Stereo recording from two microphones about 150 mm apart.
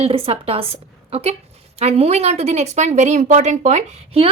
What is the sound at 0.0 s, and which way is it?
A woman's voice, 40° right (ahead or behind).